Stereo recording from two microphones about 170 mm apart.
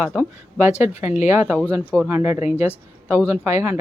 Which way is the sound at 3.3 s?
40° left (ahead or behind).